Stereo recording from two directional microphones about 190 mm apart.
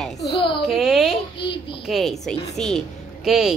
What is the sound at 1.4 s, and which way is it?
Speech, 60° left (ahead or behind).